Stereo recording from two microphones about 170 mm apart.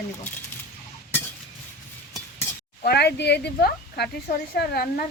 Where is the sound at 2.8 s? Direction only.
70° left (ahead or behind).